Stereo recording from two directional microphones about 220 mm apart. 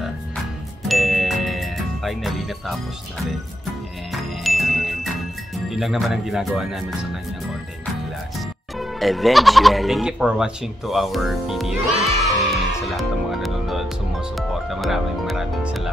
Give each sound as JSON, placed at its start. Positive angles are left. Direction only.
{"t": 0.8, "sound": "ding", "side_deg": 0}
{"t": 4.1, "sound": "music", "side_deg": 0}
{"t": 5.7, "sound": "speech", "side_deg": 0}
{"t": 8.4, "sound": "speech", "side_deg": 0}
{"t": 12.4, "sound": "music", "side_deg": 0}